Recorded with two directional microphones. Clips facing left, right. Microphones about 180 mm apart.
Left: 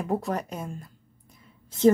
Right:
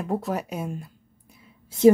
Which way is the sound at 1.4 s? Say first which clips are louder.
Right 3 dB; 10° right (ahead or behind).